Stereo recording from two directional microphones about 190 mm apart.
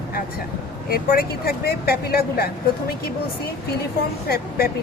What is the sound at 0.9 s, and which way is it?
Speech, 50° left (ahead or behind).